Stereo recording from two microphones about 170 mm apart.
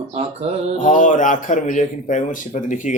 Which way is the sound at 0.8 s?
50° left (ahead or behind).